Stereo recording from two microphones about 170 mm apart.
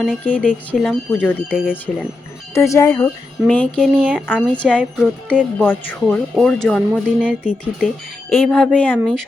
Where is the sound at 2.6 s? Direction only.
20° left (ahead or behind).